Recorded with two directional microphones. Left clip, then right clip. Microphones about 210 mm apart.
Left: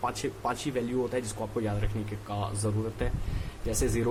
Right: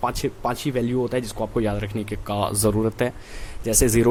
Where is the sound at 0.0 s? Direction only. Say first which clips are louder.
Right 7 dB; 30° right (ahead or behind).